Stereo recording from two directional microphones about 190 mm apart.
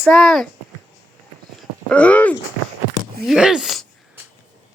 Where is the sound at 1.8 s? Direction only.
5° left (ahead or behind).